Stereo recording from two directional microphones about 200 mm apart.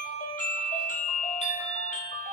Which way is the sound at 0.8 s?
40° left (ahead or behind).